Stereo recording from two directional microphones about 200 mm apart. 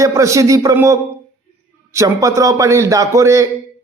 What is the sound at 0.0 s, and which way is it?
A man's voice, 15° right (ahead or behind).